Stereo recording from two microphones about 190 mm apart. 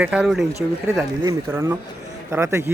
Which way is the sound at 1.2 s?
15° right (ahead or behind).